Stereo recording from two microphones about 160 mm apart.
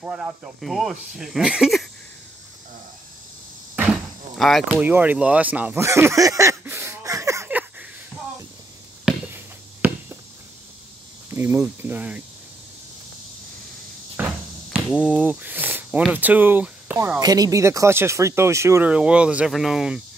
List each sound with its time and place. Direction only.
0.0 s speech: 5° right (ahead or behind)
3.7 s door: 5° right (ahead or behind)
4.8 s speech: 10° right (ahead or behind)
9.8 s a sound: 10° right (ahead or behind)
11.2 s speech: 15° right (ahead or behind)
14.1 s cupboard open or close: 10° right (ahead or behind)
14.9 s speech: 5° right (ahead or behind)
15.2 s a sound: 10° right (ahead or behind)
16.1 s speech: 10° right (ahead or behind)
17.2 s speech: 25° right (ahead or behind); by 20.0 s centre (ahead or behind)